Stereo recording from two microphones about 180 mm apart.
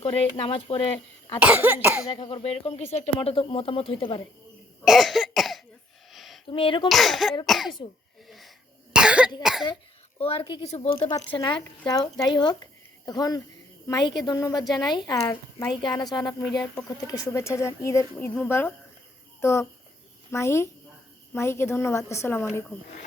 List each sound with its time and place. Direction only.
0.0 s speech: 30° left (ahead or behind)
1.4 s cough: 10° right (ahead or behind)
2.0 s speech: 30° left (ahead or behind)
4.9 s cough: centre (ahead or behind)
6.1 s a sound: centre (ahead or behind)
6.5 s a woman's voice: 30° left (ahead or behind)
6.8 s speech: centre (ahead or behind)
8.3 s cough: centre (ahead or behind)
9.4 s speech: centre (ahead or behind)
10.2 s a woman's voice: 30° left (ahead or behind); by 22.4 s 15° left (ahead or behind)